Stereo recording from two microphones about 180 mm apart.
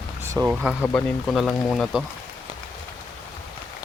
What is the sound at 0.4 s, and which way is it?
Speech, 5° right (ahead or behind).